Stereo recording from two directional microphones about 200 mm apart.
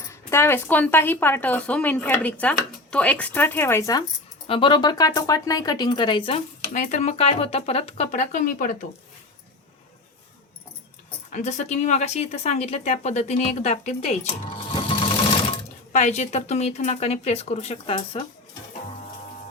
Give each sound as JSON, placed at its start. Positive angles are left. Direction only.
{"t": 0.1, "sound": "speech", "side_deg": 15}
{"t": 4.4, "sound": "speech", "side_deg": 25}
{"t": 11.3, "sound": "speech", "side_deg": 35}
{"t": 15.9, "sound": "speech", "side_deg": 35}